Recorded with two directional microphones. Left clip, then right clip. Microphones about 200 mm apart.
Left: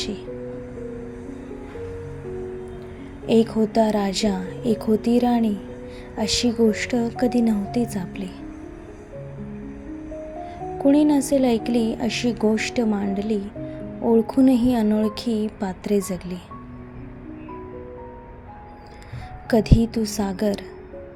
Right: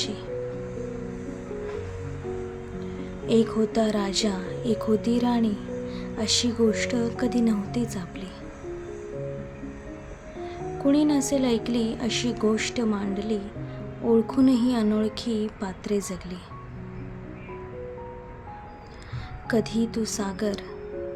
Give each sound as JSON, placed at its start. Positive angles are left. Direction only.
{"t": 3.2, "sound": "a woman's voice", "side_deg": 20}
{"t": 10.8, "sound": "a woman's voice", "side_deg": 15}
{"t": 19.5, "sound": "a woman's voice", "side_deg": 20}